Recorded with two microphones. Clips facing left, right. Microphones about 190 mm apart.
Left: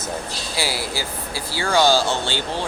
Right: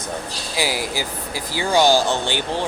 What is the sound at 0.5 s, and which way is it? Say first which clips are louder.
Speech: right 3 dB; 15° right (ahead or behind).